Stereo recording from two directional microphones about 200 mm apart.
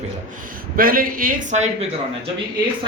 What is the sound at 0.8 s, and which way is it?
A man's voice, 45° right (ahead or behind).